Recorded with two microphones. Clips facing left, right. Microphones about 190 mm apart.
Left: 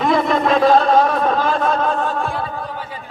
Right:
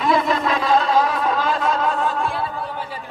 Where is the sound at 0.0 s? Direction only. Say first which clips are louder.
Left 3 dB; 50° left (ahead or behind).